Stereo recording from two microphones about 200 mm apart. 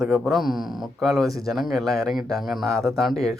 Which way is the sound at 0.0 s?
Centre (ahead or behind).